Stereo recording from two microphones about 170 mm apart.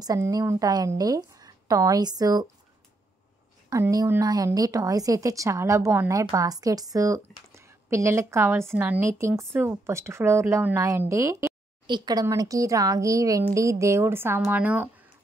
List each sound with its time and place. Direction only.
0.0 s a woman's voice: 20° right (ahead or behind)
3.7 s a woman's voice: 20° right (ahead or behind)